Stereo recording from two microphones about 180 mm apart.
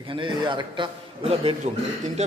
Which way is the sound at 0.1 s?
25° right (ahead or behind).